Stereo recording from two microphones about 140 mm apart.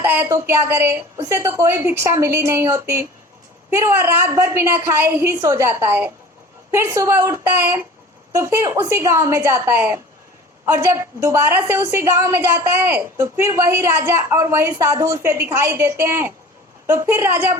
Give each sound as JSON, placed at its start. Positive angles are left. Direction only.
{"t": 0.0, "sound": "a woman's voice", "side_deg": -15}